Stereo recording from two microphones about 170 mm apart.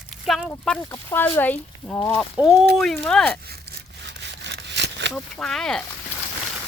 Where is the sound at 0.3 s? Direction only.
Centre (ahead or behind).